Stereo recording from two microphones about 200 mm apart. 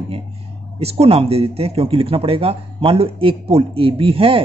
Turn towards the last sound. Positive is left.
turn(degrees=-25)  # may be behind; listen again after turning